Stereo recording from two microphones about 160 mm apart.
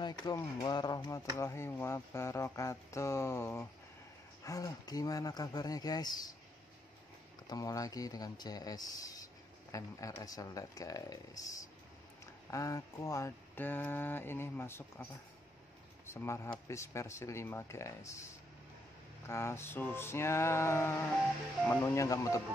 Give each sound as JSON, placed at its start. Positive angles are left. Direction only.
{"t": 0.0, "sound": "speech", "side_deg": 20}
{"t": 7.4, "sound": "speech", "side_deg": 20}
{"t": 16.1, "sound": "speech", "side_deg": 15}
{"t": 19.2, "sound": "speech", "side_deg": 15}